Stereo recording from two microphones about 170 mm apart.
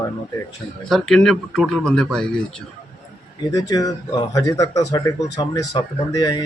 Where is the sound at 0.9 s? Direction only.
Centre (ahead or behind).